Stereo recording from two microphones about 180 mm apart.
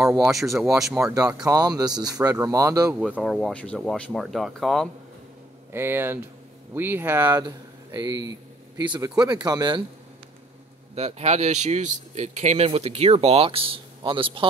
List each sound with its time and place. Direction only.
0.2 s speech: centre (ahead or behind)
1.4 s speech: 20° right (ahead or behind)
3.0 s speech: centre (ahead or behind)
5.7 s a man's voice: 10° right (ahead or behind)
11.0 s speech: 35° right (ahead or behind)